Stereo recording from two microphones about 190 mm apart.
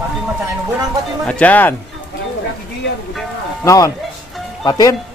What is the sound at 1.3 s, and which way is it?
Speech, 5° left (ahead or behind).